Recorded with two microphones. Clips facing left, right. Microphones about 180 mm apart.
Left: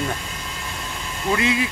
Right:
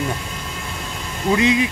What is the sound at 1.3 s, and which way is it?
Speech, 20° right (ahead or behind).